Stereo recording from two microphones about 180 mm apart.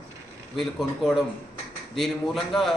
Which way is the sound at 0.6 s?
Centre (ahead or behind).